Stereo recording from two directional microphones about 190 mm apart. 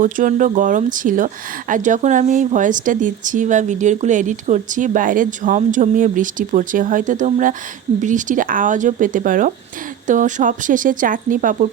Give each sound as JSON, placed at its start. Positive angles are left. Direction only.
{"t": 0.0, "sound": "speech", "side_deg": -45}